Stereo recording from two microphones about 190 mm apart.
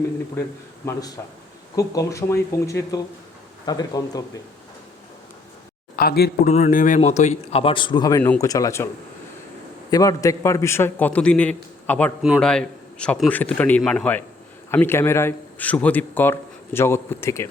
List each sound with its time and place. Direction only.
1.7 s a man's voice: 15° left (ahead or behind)
6.0 s speech: 55° left (ahead or behind)
6.5 s a man's voice: 40° left (ahead or behind); by 8.9 s 15° left (ahead or behind)
9.9 s speech: 15° left (ahead or behind)